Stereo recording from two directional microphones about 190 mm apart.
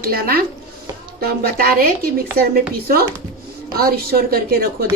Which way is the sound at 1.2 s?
55° right (ahead or behind).